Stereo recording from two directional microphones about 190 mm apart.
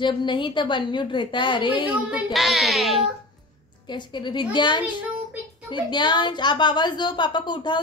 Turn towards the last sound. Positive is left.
turn(degrees=25)  # may be behind; listen again after turning